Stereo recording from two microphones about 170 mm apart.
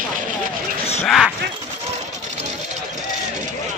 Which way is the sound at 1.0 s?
Centre (ahead or behind).